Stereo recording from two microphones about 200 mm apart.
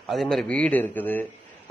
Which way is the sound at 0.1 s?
Centre (ahead or behind).